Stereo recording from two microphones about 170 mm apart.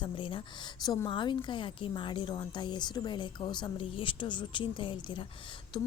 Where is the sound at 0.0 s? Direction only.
30° left (ahead or behind).